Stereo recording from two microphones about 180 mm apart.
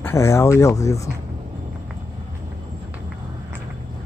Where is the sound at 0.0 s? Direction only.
15° left (ahead or behind).